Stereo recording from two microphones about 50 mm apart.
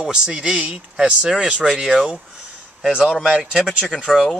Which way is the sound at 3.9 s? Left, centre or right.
Centre.